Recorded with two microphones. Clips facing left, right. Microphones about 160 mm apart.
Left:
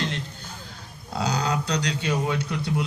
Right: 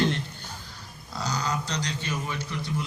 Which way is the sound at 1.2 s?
65° left (ahead or behind).